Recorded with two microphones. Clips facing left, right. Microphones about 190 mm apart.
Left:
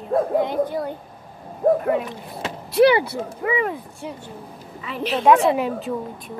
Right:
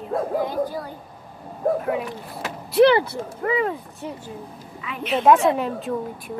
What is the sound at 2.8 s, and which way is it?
Speech, 10° left (ahead or behind).